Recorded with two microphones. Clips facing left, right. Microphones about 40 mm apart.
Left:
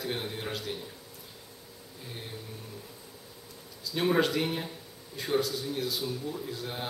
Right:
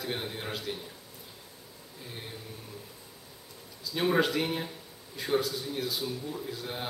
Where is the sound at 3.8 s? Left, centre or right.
Centre.